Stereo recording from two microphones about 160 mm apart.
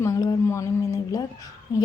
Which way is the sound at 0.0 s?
25° left (ahead or behind).